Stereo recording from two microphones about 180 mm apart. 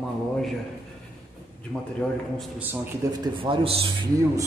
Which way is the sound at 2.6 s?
10° right (ahead or behind).